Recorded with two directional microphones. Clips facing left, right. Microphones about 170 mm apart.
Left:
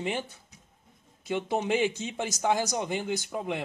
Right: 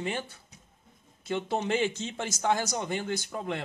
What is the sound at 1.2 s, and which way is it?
Speech, 15° left (ahead or behind).